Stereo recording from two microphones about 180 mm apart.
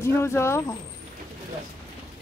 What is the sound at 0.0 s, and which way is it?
Speech, 15° left (ahead or behind).